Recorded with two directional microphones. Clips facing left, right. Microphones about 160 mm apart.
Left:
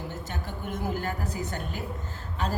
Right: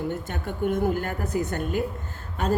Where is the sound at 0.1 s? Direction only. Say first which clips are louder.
Right 5 dB; 55° right (ahead or behind).